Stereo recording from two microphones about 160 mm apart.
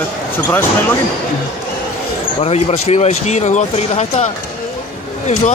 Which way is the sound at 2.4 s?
40° left (ahead or behind).